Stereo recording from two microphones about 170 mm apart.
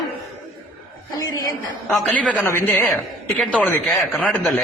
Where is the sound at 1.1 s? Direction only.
20° left (ahead or behind); by 4.5 s 5° left (ahead or behind).